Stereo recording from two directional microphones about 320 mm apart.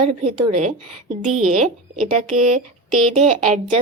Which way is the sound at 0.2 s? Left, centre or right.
Centre.